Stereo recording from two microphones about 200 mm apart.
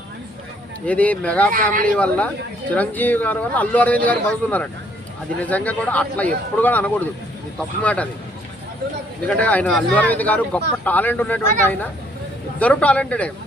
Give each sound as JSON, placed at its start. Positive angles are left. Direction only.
{"t": 0.9, "sound": "speech", "side_deg": 5}
{"t": 1.5, "sound": "speech", "side_deg": -45}
{"t": 2.0, "sound": "speech", "side_deg": 5}
{"t": 9.2, "sound": "speech", "side_deg": 5}